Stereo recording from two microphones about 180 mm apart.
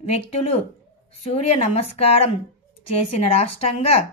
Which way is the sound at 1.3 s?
35° left (ahead or behind).